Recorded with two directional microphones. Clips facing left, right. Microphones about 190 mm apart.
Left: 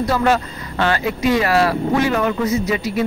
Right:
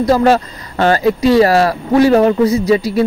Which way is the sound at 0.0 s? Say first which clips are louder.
Right 6 dB; 40° right (ahead or behind).